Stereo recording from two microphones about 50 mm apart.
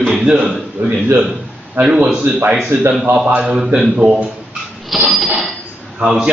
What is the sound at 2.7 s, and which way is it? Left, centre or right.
Speech, right.